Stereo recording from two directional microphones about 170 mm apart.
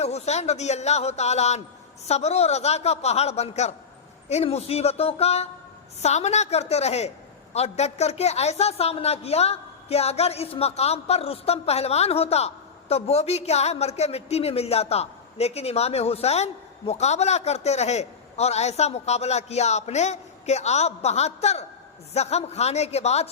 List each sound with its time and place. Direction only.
0.0 s a woman's voice: 40° left (ahead or behind)